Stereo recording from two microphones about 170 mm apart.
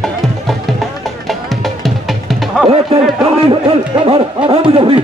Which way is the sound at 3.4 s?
30° right (ahead or behind).